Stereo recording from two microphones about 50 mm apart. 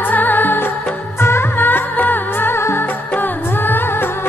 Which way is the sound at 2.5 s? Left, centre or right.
Left.